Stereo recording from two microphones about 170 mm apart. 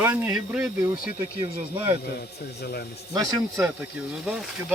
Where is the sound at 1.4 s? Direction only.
25° right (ahead or behind).